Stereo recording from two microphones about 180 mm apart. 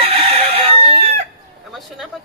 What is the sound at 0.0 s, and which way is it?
Chicken, 30° right (ahead or behind).